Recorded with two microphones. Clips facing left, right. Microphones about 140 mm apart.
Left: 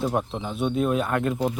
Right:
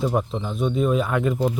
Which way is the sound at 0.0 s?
Centre (ahead or behind).